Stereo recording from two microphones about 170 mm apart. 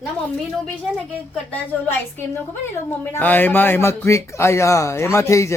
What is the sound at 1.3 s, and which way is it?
A woman's voice, 10° left (ahead or behind).